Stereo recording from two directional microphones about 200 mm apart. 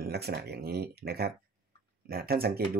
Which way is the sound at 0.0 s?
55° right (ahead or behind).